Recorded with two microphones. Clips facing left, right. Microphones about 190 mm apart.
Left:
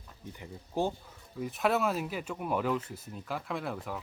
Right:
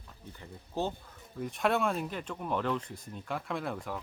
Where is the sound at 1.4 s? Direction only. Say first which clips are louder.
Left 1 dB; centre (ahead or behind).